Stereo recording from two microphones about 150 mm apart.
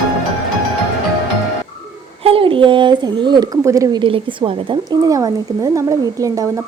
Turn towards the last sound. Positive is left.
turn(degrees=-25)  # may be behind; listen again after turning